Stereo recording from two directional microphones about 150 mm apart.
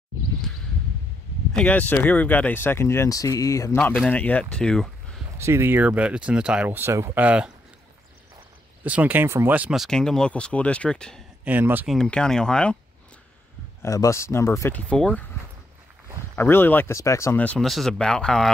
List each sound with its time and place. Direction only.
1.5 s speech: 10° left (ahead or behind)
3.7 s speech: 10° left (ahead or behind)
5.4 s speech: 15° right (ahead or behind)
8.8 s speech: 10° right (ahead or behind)
11.4 s speech: 10° right (ahead or behind)
11.9 s speech: 5° left (ahead or behind)
13.8 s speech: 20° left (ahead or behind)
16.3 s speech: 15° left (ahead or behind)